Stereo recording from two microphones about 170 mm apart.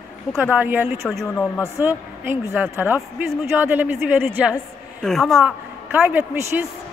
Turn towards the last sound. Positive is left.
turn(degrees=-10)  # may be behind; listen again after turning